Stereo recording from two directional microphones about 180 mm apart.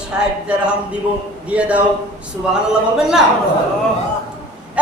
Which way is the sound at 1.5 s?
5° right (ahead or behind).